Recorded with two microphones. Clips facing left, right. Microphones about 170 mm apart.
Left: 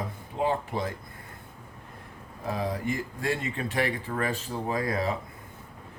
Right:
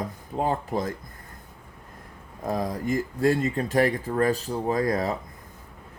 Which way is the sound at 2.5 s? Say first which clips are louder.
Right 3 dB; 40° right (ahead or behind).